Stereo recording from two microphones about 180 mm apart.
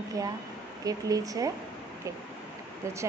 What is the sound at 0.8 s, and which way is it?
Speech, 20° right (ahead or behind).